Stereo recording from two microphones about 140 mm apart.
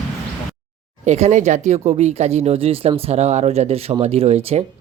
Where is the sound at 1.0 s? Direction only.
55° right (ahead or behind).